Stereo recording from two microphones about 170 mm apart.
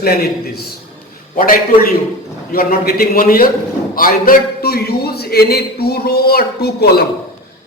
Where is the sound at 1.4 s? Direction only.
60° left (ahead or behind).